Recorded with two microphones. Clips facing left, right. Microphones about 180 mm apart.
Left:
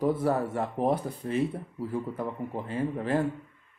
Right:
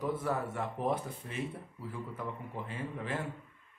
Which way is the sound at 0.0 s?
35° left (ahead or behind).